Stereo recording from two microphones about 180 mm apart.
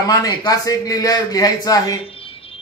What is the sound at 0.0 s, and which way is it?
A man's voice, 20° left (ahead or behind).